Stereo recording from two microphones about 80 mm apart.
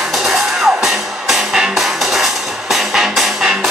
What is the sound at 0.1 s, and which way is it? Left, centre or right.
Music, centre.